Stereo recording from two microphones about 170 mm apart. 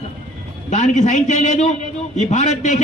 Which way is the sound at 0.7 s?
40° left (ahead or behind).